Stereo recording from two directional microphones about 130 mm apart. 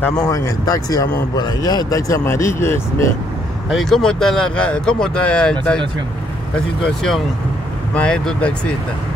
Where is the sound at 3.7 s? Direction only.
Centre (ahead or behind).